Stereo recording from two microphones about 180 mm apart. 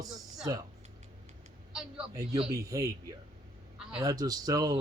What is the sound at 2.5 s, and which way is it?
Speech, 20° right (ahead or behind).